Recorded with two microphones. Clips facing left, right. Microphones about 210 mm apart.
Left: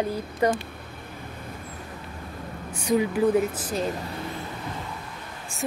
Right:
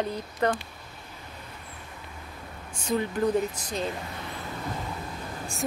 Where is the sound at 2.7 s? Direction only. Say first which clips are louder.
Left 5 dB; 10° left (ahead or behind).